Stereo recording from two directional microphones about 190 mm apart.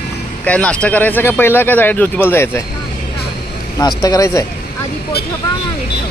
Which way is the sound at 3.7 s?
20° left (ahead or behind).